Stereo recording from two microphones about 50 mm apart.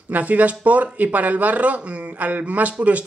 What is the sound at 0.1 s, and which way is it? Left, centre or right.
Speech, right.